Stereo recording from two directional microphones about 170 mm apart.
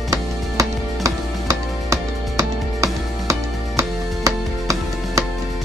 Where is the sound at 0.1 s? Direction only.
20° right (ahead or behind).